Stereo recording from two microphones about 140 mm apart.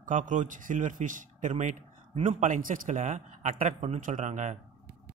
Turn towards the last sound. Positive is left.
turn(degrees=-60)  # may be behind; listen again after turning